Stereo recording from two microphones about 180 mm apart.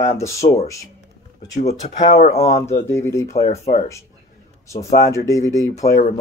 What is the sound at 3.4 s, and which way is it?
Speech, 40° left (ahead or behind).